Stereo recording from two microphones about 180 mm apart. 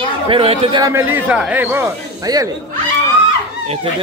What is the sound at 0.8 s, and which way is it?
Speech, 15° right (ahead or behind).